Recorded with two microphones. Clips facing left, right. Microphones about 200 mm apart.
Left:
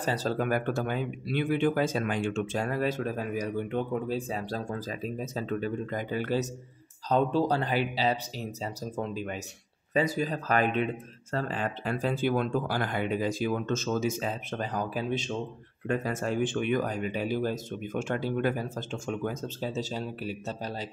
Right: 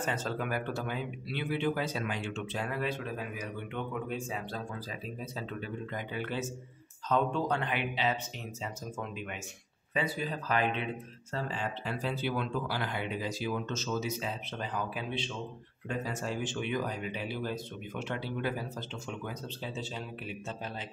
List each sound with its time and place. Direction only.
0.0 s speech: 35° left (ahead or behind)
15.9 s speech: 55° left (ahead or behind)